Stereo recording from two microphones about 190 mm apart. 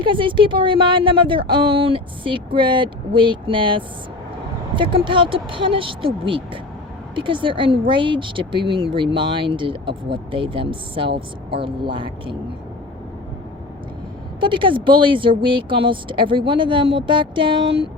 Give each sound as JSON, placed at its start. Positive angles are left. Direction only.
{"t": 0.0, "sound": "speech", "side_deg": -25}
{"t": 14.4, "sound": "speech", "side_deg": -25}